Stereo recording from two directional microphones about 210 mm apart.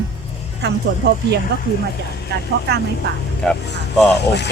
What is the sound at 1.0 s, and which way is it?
Speech, 50° right (ahead or behind).